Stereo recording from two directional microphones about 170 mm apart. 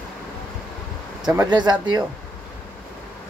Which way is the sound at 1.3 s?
25° right (ahead or behind).